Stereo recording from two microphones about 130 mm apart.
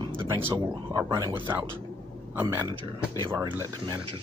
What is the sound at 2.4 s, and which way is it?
Speech, 30° right (ahead or behind).